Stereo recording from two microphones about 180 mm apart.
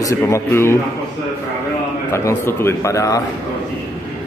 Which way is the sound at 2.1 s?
15° left (ahead or behind).